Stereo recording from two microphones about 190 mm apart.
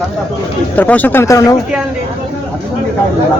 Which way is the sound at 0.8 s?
10° left (ahead or behind).